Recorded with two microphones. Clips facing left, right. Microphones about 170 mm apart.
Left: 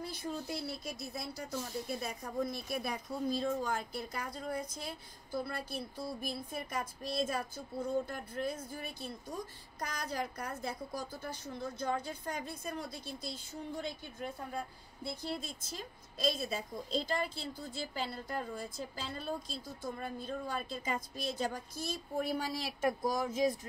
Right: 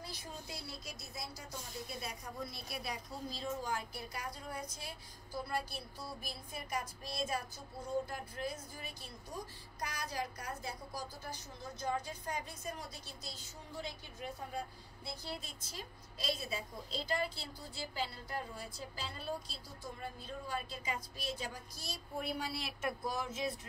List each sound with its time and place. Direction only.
0.0 s a woman's voice: 55° left (ahead or behind)
15.6 s a woman's voice: 50° left (ahead or behind)